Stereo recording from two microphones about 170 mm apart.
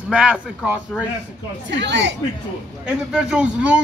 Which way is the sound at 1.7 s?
90° right.